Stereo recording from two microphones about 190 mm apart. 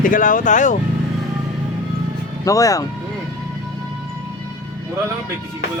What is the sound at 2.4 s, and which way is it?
Speech, 15° left (ahead or behind).